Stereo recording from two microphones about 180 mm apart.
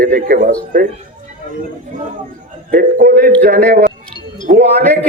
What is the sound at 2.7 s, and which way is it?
A man's voice, 55° right (ahead or behind).